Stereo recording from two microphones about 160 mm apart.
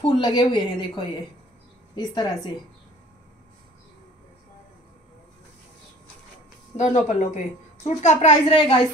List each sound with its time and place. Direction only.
0.0 s a woman's voice: 30° left (ahead or behind)
6.8 s a woman's voice: 45° left (ahead or behind)